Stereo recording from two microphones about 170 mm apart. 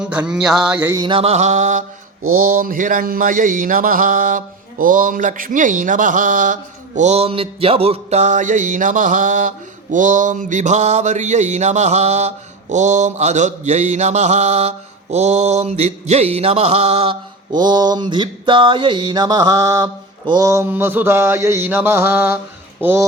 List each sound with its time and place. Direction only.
0.0 s music: 5° right (ahead or behind)
0.9 s mantra: 30° right (ahead or behind); by 1.8 s 45° right (ahead or behind)
2.4 s a sound: 55° right (ahead or behind)
15.1 s mantra: 40° right (ahead or behind); by 22.4 s 15° right (ahead or behind)
22.8 s speech: 15° right (ahead or behind)